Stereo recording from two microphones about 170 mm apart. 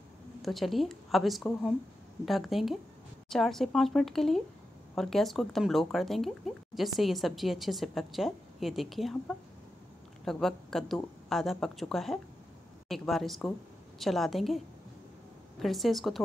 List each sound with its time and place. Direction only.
0.4 s a woman's voice: centre (ahead or behind)
15.6 s speech: centre (ahead or behind)